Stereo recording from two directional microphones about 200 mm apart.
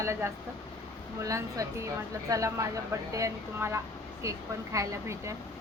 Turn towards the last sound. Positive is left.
turn(degrees=-15)  # may be behind; listen again after turning